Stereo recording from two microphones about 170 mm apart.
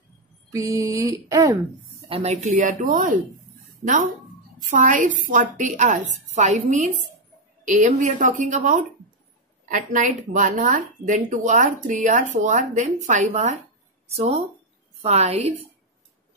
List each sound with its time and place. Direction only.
0.5 s a woman's voice: 20° right (ahead or behind); by 15.5 s 40° right (ahead or behind)